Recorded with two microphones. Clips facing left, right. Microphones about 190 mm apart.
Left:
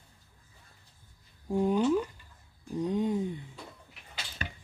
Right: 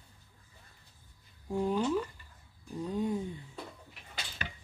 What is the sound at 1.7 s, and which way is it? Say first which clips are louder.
Speech: left 4 dB; 20° left (ahead or behind).